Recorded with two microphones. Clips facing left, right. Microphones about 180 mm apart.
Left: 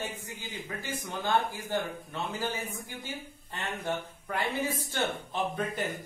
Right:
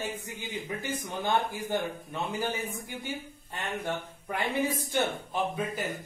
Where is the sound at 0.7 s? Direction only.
20° right (ahead or behind).